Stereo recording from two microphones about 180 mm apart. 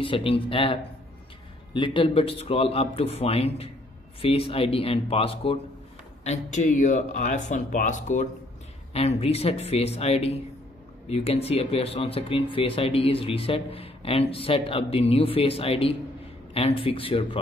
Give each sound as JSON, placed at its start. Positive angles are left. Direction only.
{"t": 0.0, "sound": "speech", "side_deg": 30}
{"t": 6.2, "sound": "speech", "side_deg": 40}